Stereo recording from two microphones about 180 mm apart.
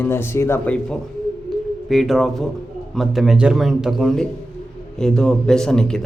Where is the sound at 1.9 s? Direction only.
Centre (ahead or behind).